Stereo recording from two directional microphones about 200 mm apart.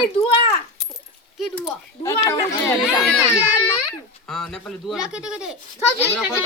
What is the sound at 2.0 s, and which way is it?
Speech, 15° left (ahead or behind).